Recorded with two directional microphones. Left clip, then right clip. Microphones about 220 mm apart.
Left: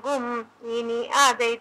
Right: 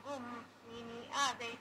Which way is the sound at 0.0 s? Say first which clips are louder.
Left 18 dB; 50° left (ahead or behind).